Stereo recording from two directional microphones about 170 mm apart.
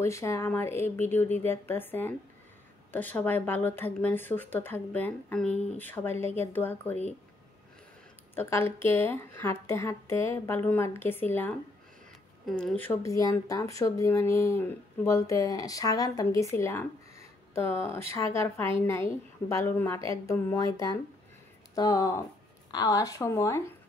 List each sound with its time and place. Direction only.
0.0 s speech: 15° left (ahead or behind)
8.4 s a woman's voice: 15° left (ahead or behind)